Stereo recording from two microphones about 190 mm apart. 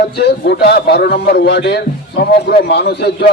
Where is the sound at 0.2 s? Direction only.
60° left (ahead or behind).